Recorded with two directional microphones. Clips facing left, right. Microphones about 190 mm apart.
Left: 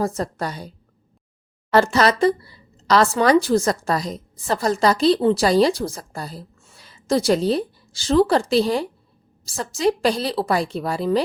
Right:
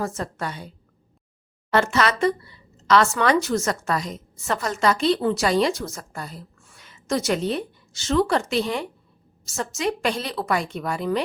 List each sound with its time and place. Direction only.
0.0 s speech: 35° left (ahead or behind)
1.7 s speech: 35° left (ahead or behind)